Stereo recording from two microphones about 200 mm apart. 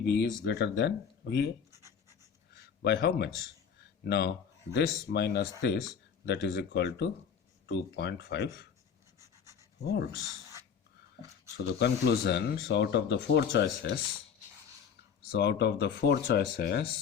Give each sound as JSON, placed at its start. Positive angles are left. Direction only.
{"t": 0.0, "sound": "speech", "side_deg": 60}
{"t": 1.7, "sound": "a sound", "side_deg": -15}
{"t": 2.8, "sound": "speech", "side_deg": 55}
{"t": 9.1, "sound": "pant", "side_deg": -15}
{"t": 11.5, "sound": "speech", "side_deg": 55}
{"t": 15.3, "sound": "speech", "side_deg": 55}